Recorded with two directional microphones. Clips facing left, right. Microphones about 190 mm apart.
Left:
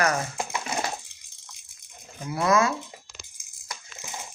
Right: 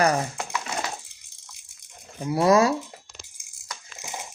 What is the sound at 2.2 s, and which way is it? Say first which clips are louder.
Speech: right 4 dB; 35° right (ahead or behind).